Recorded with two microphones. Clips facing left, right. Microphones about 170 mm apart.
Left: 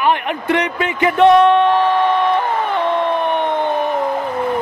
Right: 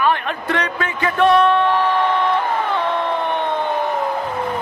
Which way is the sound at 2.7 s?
15° left (ahead or behind).